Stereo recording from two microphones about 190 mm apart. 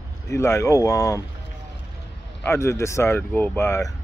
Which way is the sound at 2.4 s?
15° left (ahead or behind).